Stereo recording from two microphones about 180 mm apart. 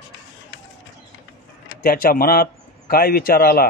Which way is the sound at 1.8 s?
55° left (ahead or behind).